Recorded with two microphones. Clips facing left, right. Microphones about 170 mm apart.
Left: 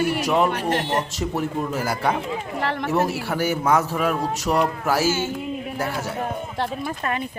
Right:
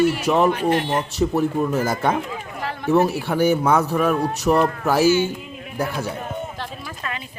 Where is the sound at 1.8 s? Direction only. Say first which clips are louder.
Right 3 dB; 10° left (ahead or behind).